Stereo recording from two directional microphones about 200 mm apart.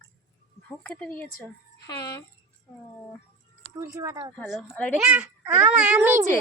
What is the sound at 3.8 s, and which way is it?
Speech, 15° right (ahead or behind).